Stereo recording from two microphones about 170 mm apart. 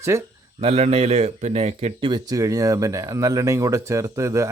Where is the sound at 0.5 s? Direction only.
35° right (ahead or behind).